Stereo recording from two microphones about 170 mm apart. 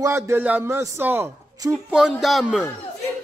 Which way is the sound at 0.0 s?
15° right (ahead or behind).